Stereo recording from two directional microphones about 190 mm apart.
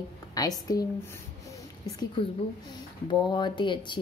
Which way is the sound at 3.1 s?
25° left (ahead or behind).